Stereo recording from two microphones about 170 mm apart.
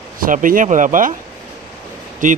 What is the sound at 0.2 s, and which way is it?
Speech, 55° right (ahead or behind).